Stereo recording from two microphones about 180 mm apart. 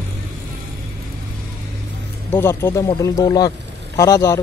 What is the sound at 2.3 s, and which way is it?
Speech, 15° left (ahead or behind).